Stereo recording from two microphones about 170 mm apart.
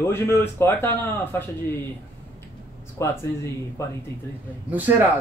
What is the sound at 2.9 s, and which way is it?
Speech, 15° left (ahead or behind).